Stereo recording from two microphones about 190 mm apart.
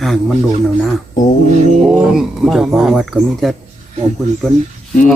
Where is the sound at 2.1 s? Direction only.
Centre (ahead or behind).